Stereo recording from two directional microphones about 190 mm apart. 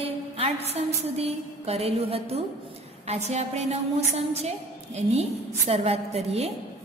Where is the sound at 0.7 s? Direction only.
35° right (ahead or behind).